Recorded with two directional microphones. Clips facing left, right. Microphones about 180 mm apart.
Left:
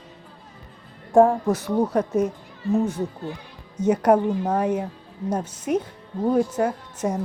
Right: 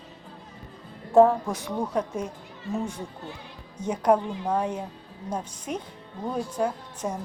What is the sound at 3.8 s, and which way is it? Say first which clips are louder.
Speech: left 10 dB; 10° right (ahead or behind).